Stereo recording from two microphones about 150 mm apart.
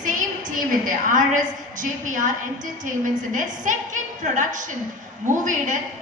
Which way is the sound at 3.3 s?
60° right (ahead or behind).